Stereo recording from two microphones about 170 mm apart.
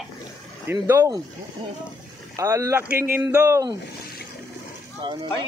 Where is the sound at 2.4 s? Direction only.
15° right (ahead or behind).